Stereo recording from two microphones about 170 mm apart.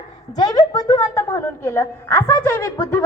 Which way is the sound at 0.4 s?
20° left (ahead or behind).